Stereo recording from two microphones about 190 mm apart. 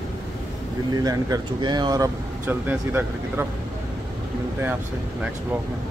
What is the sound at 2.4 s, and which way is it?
Speech, 10° right (ahead or behind).